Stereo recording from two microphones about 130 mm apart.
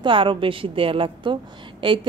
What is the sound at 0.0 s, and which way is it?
Speech, 40° right (ahead or behind).